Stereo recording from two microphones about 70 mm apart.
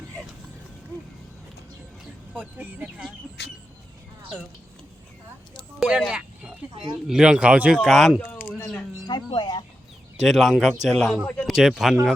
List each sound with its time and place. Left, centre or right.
2.4 s speech: right
5.8 s speech: centre
7.8 s a man's voice: centre
8.3 s a sound: left
9.0 s speech: left
10.2 s a man's voice: centre